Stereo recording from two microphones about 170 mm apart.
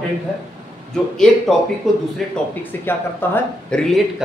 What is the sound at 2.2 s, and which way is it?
Speech, centre (ahead or behind).